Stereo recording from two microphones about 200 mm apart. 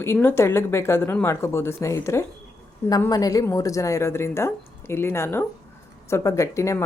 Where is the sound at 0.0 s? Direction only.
10° left (ahead or behind).